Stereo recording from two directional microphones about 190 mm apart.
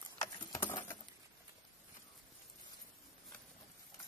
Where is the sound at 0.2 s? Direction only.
20° left (ahead or behind).